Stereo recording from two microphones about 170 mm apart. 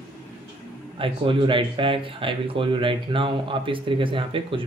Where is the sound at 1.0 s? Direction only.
30° right (ahead or behind).